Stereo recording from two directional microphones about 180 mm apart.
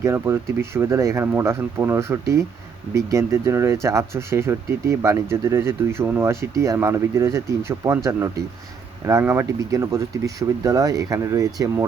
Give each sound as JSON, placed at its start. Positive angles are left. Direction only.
{"t": 0.0, "sound": "speech", "side_deg": -15}